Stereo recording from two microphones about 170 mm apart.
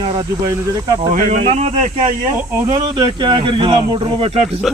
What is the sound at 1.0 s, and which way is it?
Speech, 45° right (ahead or behind).